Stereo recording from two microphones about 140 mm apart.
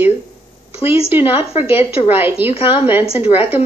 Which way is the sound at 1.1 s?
15° right (ahead or behind).